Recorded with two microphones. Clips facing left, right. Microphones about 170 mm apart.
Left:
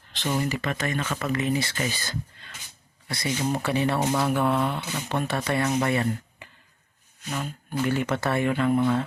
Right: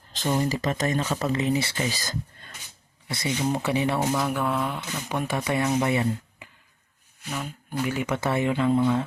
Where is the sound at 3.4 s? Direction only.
20° right (ahead or behind).